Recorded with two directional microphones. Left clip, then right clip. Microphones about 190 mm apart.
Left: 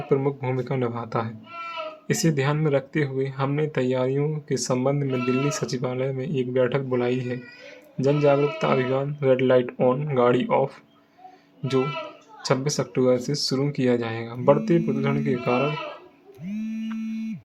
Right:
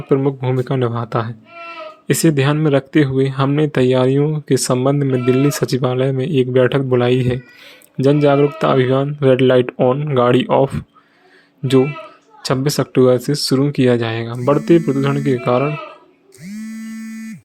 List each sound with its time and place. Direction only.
0.1 s speech: 25° right (ahead or behind)
9.7 s speech: 25° right (ahead or behind)
10.2 s speech: 35° right (ahead or behind)
12.4 s speech: 35° right (ahead or behind)